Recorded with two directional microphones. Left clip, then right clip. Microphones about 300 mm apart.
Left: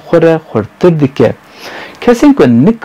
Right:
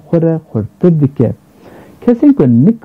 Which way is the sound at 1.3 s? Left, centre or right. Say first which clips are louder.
Left 8 dB; centre.